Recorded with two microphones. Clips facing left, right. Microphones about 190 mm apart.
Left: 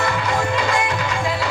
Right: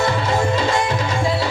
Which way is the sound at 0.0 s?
30° right (ahead or behind).